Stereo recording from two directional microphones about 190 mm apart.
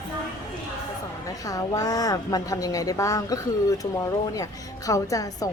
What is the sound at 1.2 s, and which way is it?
A woman's voice, 20° left (ahead or behind).